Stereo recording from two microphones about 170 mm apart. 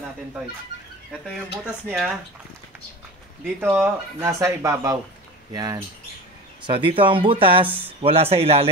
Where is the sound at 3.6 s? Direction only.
10° right (ahead or behind).